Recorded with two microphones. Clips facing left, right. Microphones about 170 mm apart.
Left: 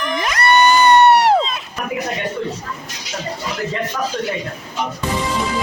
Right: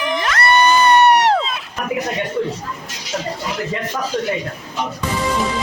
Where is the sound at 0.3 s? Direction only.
20° left (ahead or behind).